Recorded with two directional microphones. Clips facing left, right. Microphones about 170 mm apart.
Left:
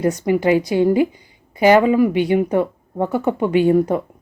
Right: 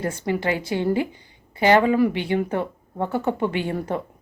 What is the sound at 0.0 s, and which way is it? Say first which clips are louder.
A woman's voice: left 7 dB; 20° left (ahead or behind).